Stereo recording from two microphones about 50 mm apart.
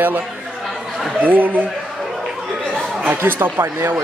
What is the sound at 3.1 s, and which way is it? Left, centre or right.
Speech, right.